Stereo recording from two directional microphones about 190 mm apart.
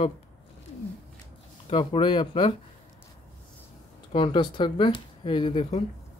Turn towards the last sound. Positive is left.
turn(degrees=25)  # may be behind; listen again after turning